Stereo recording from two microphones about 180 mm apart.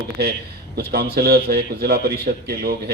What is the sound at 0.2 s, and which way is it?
A man's voice, 65° right (ahead or behind).